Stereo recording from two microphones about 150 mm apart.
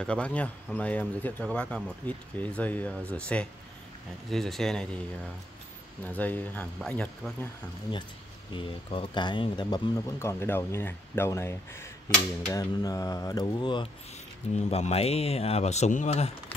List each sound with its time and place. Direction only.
0.0 s speech: 5° left (ahead or behind)
6.0 s speech: 10° left (ahead or behind)
8.5 s speech: 35° left (ahead or behind)
14.5 s speech: 50° left (ahead or behind)